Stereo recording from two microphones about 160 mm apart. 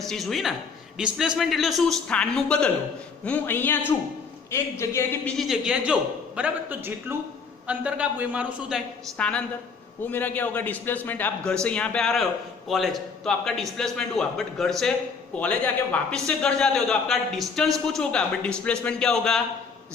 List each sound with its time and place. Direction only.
0.0 s a man's voice: centre (ahead or behind)
5.4 s a man's voice: 5° right (ahead or behind)
9.1 s a man's voice: 5° left (ahead or behind)